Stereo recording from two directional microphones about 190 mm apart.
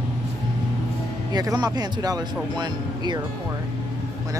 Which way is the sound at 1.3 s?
20° right (ahead or behind).